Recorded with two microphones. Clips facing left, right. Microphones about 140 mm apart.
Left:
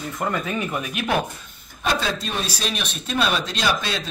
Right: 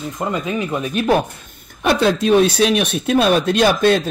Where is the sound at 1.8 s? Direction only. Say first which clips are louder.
Right 10 dB; 60° right (ahead or behind).